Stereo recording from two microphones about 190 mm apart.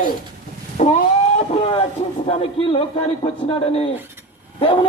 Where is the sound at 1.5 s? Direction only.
30° left (ahead or behind).